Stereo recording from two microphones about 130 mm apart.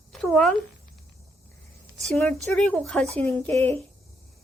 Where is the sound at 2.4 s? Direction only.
5° left (ahead or behind).